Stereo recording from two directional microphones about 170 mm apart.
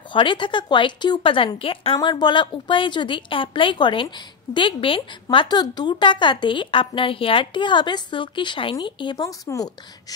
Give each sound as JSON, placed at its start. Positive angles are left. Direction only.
{"t": 0.1, "sound": "a woman's voice", "side_deg": 30}